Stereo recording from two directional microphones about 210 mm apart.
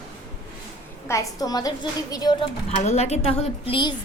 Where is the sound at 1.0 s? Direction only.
15° left (ahead or behind).